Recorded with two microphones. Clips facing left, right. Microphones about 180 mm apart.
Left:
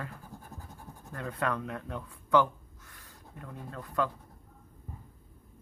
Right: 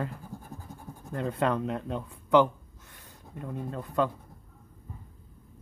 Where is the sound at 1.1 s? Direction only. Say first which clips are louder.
Right 5 dB; 25° right (ahead or behind).